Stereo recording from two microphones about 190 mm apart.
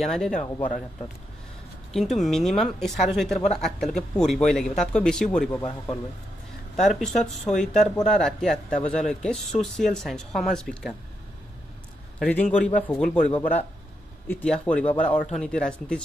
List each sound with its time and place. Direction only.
0.0 s speech: centre (ahead or behind)
1.9 s speech: centre (ahead or behind)
6.8 s speech: centre (ahead or behind)
12.2 s a man's voice: 5° left (ahead or behind)